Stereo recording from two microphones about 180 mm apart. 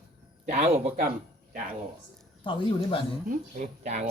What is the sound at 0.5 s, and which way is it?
Speech, 35° right (ahead or behind).